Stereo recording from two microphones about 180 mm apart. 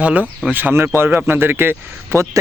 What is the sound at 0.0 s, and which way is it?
A man's voice, 5° right (ahead or behind).